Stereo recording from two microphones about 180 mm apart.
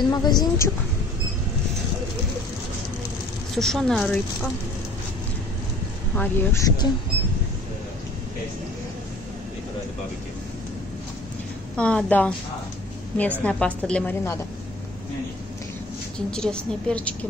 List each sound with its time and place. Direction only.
0.0 s a woman's voice: 25° left (ahead or behind)
3.5 s a woman's voice: centre (ahead or behind)
6.1 s a woman's voice: 10° left (ahead or behind)
11.7 s a woman's voice: 5° left (ahead or behind)
16.3 s a woman's voice: 5° left (ahead or behind)